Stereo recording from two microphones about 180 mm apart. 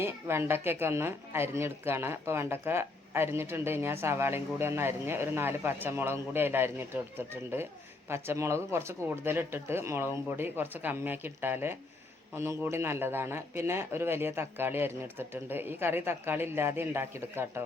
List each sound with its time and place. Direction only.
0.0 s speech: 15° right (ahead or behind)
8.1 s speech: 15° right (ahead or behind)